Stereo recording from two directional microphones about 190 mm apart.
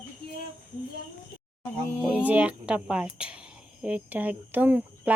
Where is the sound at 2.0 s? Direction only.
5° right (ahead or behind).